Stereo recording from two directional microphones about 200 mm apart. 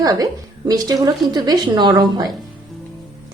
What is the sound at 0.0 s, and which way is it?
A woman's voice, 20° right (ahead or behind).